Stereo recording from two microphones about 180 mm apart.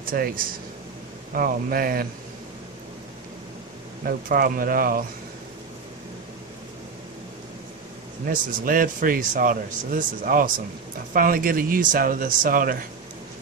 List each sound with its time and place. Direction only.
0.0 s speech: 55° right (ahead or behind)
4.0 s speech: 55° right (ahead or behind)
8.3 s speech: 50° right (ahead or behind)